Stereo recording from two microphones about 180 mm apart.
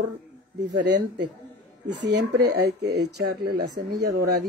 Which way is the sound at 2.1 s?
65° right (ahead or behind).